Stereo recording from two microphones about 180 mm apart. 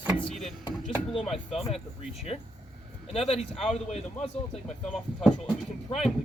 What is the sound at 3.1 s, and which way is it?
Speech, 35° left (ahead or behind).